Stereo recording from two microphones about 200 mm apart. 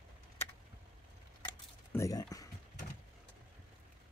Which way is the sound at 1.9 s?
15° left (ahead or behind).